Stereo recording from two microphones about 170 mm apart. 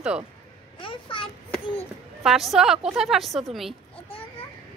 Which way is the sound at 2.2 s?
Centre (ahead or behind).